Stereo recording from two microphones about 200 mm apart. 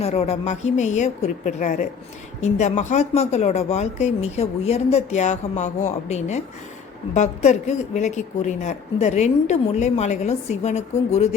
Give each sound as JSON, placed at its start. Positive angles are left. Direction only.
{"t": 0.0, "sound": "speech", "side_deg": 30}